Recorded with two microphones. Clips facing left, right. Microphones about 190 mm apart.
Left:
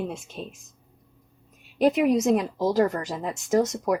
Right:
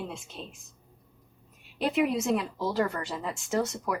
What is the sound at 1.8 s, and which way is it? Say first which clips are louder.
Speech: left 6 dB; 40° left (ahead or behind).